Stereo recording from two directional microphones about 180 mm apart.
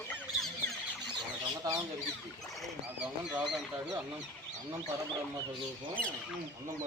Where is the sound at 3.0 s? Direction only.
5° right (ahead or behind).